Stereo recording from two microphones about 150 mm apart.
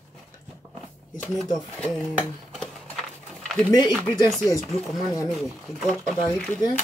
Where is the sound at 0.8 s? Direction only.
5° left (ahead or behind).